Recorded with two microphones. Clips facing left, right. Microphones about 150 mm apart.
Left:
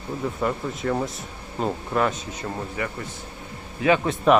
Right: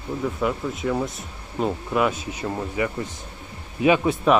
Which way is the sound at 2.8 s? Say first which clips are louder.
Right 4 dB; 20° right (ahead or behind).